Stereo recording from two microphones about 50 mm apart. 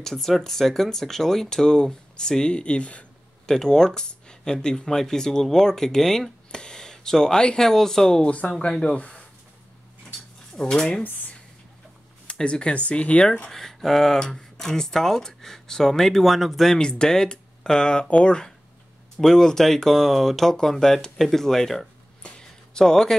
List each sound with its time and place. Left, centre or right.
0.0 s speech: centre; by 3.1 s left
3.4 s speech: centre
8.2 s speech: left
8.5 s speech: centre
10.5 s speech: centre
12.3 s speech: centre
13.5 s speech: centre